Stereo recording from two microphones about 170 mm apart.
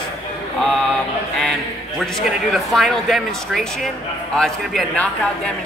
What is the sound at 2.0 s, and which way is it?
A man's voice, centre (ahead or behind).